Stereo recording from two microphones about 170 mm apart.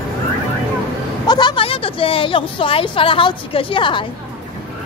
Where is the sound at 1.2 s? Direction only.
25° left (ahead or behind).